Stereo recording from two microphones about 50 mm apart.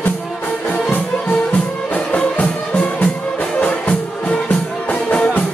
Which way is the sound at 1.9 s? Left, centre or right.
Left.